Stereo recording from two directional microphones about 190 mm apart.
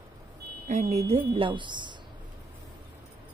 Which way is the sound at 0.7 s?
35° right (ahead or behind).